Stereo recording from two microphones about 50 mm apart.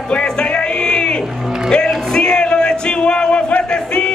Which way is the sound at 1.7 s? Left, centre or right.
Centre.